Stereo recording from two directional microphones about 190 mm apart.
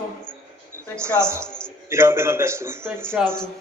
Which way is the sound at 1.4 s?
5° left (ahead or behind).